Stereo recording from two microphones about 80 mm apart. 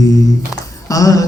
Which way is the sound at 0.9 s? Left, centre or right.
Left.